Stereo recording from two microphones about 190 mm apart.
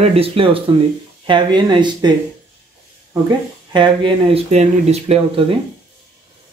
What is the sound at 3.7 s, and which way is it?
Speech, 25° right (ahead or behind).